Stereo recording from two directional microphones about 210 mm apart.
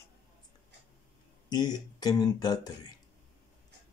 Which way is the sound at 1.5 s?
20° left (ahead or behind).